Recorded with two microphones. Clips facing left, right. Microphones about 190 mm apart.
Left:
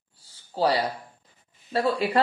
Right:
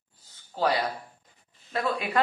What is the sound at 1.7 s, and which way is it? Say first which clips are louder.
Speech: left 5 dB; 30° left (ahead or behind).